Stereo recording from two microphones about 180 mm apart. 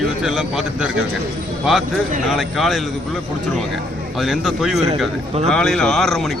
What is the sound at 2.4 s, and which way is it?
Speech, centre (ahead or behind).